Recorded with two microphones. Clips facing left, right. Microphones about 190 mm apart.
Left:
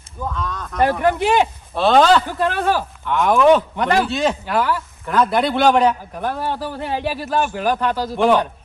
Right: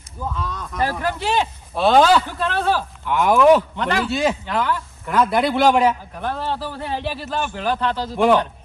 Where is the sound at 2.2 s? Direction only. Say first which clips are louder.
Left 2 dB; 15° left (ahead or behind).